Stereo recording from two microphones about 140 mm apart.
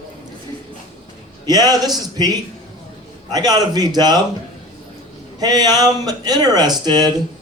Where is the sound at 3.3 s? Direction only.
30° right (ahead or behind).